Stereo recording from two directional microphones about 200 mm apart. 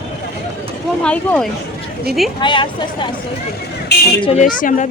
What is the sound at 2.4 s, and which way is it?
Speech, 25° left (ahead or behind).